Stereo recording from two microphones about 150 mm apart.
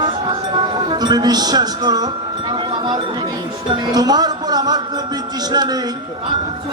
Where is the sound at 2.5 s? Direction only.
30° right (ahead or behind).